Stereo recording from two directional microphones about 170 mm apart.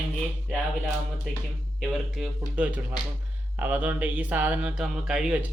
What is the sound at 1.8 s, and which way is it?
Speech, 5° right (ahead or behind).